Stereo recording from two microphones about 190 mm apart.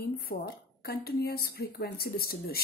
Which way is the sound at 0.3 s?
45° left (ahead or behind).